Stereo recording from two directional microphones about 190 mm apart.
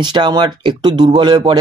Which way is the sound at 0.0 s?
25° right (ahead or behind).